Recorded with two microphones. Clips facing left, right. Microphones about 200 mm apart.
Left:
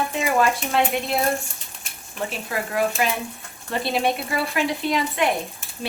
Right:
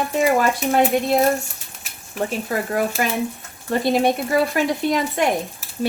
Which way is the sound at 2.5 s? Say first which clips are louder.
Left 1 dB; 45° right (ahead or behind).